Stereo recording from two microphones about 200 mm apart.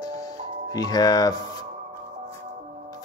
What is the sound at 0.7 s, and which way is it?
Speech, 20° left (ahead or behind).